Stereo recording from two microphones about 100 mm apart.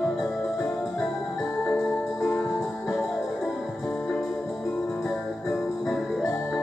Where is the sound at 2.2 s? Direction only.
Centre (ahead or behind).